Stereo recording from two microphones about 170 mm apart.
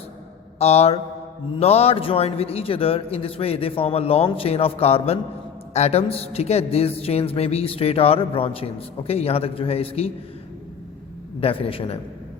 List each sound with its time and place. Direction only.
0.6 s a woman's voice: 40° left (ahead or behind)
11.3 s a woman's voice: 35° left (ahead or behind)